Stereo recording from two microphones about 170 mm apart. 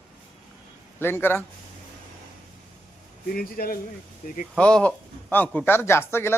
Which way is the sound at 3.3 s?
60° left (ahead or behind).